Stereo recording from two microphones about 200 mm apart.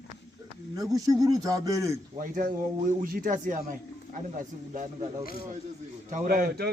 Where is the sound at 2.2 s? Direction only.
40° right (ahead or behind).